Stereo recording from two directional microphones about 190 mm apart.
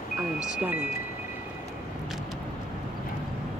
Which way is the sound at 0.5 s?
10° right (ahead or behind).